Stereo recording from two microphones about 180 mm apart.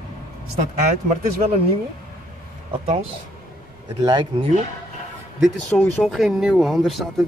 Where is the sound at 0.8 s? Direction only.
45° right (ahead or behind).